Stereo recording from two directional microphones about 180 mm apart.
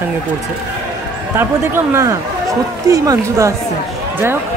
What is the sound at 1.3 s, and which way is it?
Speech, 15° right (ahead or behind).